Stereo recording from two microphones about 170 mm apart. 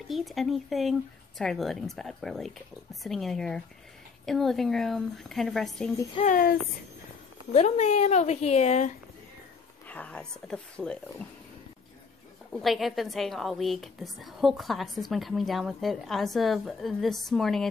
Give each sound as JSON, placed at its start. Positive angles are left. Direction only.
{"t": 0.1, "sound": "a woman's voice", "side_deg": 0}
{"t": 6.2, "sound": "speech", "side_deg": 55}
{"t": 7.5, "sound": "a woman's voice", "side_deg": 40}
{"t": 9.8, "sound": "speech", "side_deg": 10}
{"t": 12.6, "sound": "a woman's voice", "side_deg": 0}